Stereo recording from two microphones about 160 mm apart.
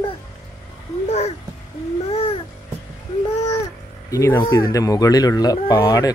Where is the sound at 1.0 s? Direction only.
40° left (ahead or behind).